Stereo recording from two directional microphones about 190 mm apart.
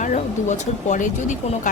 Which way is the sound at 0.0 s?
40° left (ahead or behind).